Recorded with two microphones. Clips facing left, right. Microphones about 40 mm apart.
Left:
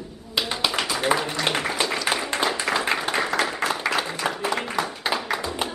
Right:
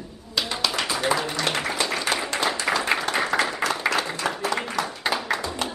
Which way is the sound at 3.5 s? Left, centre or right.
Centre.